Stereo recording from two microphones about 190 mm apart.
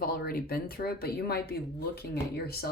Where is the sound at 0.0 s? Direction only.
50° left (ahead or behind).